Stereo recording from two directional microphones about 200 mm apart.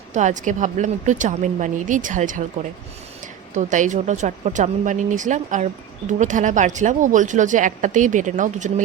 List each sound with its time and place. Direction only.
0.1 s speech: 35° right (ahead or behind)
3.5 s speech: 40° right (ahead or behind)